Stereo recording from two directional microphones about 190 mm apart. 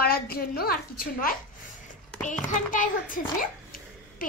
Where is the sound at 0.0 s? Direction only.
50° left (ahead or behind).